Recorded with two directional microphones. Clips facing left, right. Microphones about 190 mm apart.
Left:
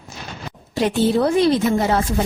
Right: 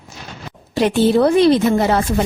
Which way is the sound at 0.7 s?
70° right (ahead or behind).